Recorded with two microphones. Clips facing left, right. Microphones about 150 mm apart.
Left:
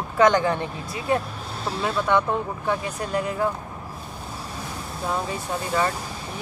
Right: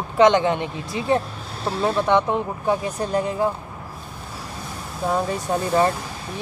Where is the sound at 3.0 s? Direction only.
30° right (ahead or behind).